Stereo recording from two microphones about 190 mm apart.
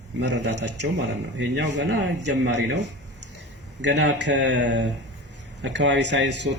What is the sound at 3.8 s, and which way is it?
Speech, 65° right (ahead or behind).